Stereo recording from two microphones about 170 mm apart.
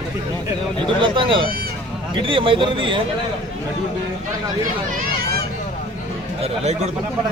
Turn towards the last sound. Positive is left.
turn(degrees=-40)  # may be behind; listen again after turning